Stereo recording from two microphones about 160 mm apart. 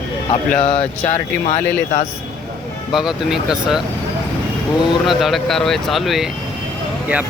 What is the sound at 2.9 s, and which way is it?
Speech, 5° right (ahead or behind).